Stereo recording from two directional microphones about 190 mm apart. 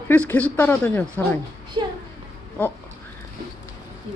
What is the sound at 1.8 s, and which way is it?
Speech, 20° right (ahead or behind).